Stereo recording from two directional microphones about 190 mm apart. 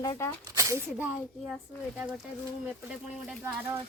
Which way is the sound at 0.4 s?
15° right (ahead or behind).